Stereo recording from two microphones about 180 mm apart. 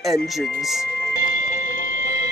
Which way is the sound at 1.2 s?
50° left (ahead or behind).